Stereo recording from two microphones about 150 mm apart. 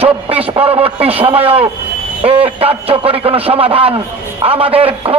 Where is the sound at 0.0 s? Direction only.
40° right (ahead or behind).